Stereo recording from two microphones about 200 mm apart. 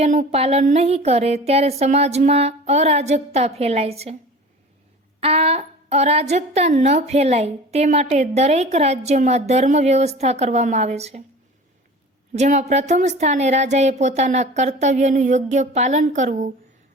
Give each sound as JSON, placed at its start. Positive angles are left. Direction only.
{"t": 0.0, "sound": "a woman's voice", "side_deg": -35}
{"t": 5.2, "sound": "a woman's voice", "side_deg": -30}
{"t": 12.3, "sound": "a woman's voice", "side_deg": -35}